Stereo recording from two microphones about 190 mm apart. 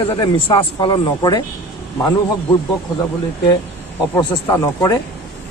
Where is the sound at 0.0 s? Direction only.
25° left (ahead or behind).